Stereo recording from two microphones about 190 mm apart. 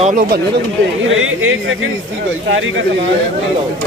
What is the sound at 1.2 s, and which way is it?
Speech, 90° right.